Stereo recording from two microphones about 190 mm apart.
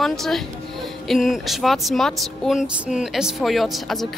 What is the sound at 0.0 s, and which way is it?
A woman's voice, centre (ahead or behind).